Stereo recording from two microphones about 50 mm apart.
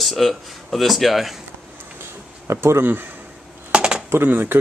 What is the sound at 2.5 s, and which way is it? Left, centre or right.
Speech, right.